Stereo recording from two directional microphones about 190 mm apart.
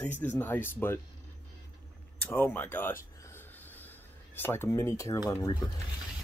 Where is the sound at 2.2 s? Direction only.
10° left (ahead or behind).